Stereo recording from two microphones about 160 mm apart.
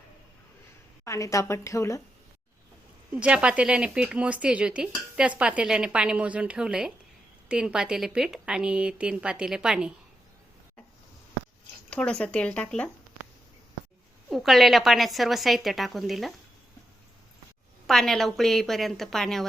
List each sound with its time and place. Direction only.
1.0 s a woman's voice: 20° left (ahead or behind)
3.2 s a woman's voice: 5° right (ahead or behind)
11.9 s speech: 5° left (ahead or behind)
14.3 s a woman's voice: centre (ahead or behind)
17.8 s a woman's voice: centre (ahead or behind)